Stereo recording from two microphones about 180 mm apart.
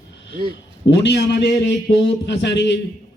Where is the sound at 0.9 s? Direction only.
75° left (ahead or behind).